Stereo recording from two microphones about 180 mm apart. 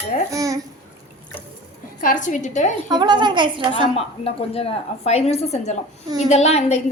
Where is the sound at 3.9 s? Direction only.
35° left (ahead or behind).